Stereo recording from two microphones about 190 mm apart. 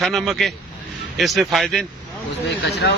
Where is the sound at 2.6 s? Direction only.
60° left (ahead or behind).